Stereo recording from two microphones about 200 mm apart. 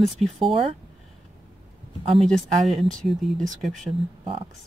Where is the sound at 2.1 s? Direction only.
Centre (ahead or behind).